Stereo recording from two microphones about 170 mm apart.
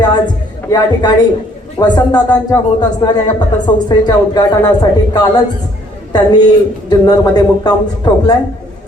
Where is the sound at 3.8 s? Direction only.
25° left (ahead or behind).